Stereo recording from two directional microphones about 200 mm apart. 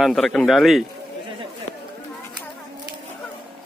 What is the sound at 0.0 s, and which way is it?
Speech, centre (ahead or behind).